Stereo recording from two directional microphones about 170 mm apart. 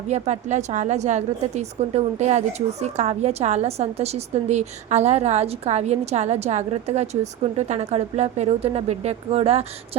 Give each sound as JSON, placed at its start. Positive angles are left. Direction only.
{"t": 0.1, "sound": "a woman's voice", "side_deg": -45}